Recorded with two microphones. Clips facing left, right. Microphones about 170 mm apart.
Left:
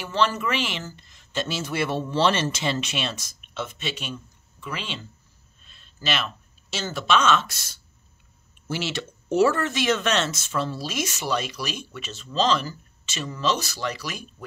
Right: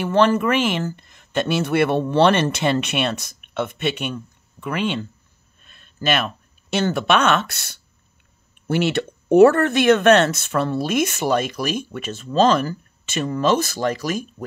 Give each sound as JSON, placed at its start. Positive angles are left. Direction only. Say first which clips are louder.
{"t": 0.0, "sound": "speech", "louder": "right 8 dB", "side_deg": -55}